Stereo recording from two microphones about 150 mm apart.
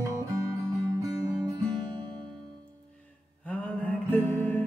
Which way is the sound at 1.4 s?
30° right (ahead or behind).